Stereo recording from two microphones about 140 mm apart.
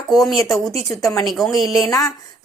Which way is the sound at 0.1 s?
Centre (ahead or behind).